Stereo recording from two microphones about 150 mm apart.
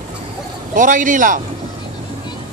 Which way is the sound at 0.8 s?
60° right (ahead or behind).